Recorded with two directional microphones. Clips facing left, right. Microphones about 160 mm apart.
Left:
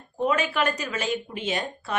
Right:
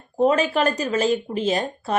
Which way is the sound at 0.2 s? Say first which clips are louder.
Right 6 dB; 35° right (ahead or behind).